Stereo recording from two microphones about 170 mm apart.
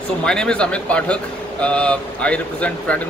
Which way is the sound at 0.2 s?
5° left (ahead or behind).